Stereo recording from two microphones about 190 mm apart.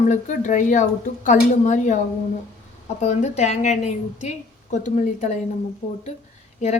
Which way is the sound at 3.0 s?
35° left (ahead or behind).